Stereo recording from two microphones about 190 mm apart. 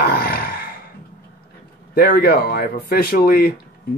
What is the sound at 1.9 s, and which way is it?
Speech, 50° left (ahead or behind).